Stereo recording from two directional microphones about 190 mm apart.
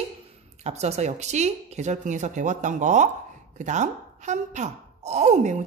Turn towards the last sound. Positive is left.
turn(degrees=-40)  # may be behind; listen again after turning